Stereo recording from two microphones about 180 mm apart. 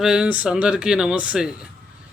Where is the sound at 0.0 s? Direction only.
5° right (ahead or behind).